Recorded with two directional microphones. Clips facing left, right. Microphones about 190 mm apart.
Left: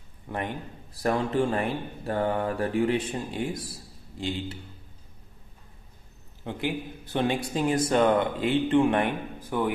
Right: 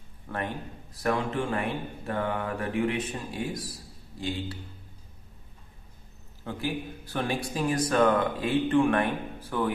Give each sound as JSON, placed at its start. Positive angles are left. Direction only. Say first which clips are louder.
{"t": 0.3, "sound": "a man's voice", "louder": "left 1 dB", "side_deg": 15}
{"t": 0.9, "sound": "a man's voice", "louder": "left 3 dB", "side_deg": 35}
{"t": 6.4, "sound": "a man's voice", "louder": "left 1 dB", "side_deg": 20}